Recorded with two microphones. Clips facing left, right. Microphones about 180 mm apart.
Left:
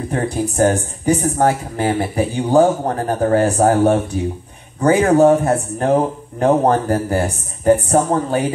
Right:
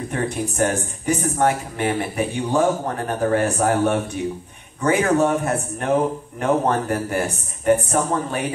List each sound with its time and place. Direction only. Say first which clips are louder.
0.1 s speech: left 5 dB; 35° left (ahead or behind)